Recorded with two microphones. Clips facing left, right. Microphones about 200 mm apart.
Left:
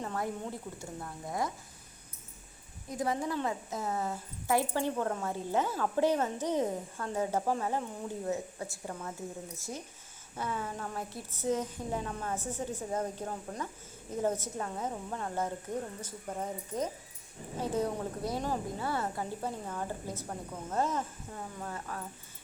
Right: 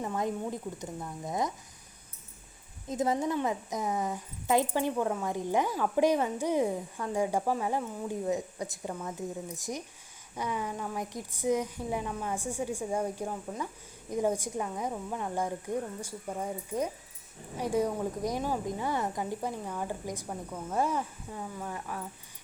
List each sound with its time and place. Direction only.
0.0 s a woman's voice: 15° right (ahead or behind)
2.9 s a woman's voice: 25° right (ahead or behind)